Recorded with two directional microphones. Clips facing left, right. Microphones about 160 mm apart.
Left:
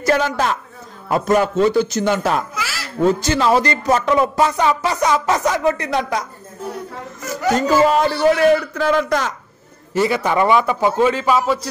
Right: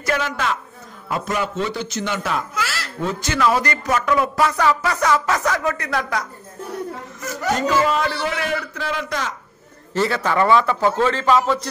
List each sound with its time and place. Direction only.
0.0 s a woman's voice: 35° left (ahead or behind)
2.5 s a sound: 5° left (ahead or behind)
3.0 s speech: 35° left (ahead or behind)
7.6 s a man's voice: 35° left (ahead or behind)
9.9 s a man's voice: 15° left (ahead or behind)